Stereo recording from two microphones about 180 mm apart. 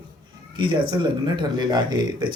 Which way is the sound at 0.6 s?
25° right (ahead or behind).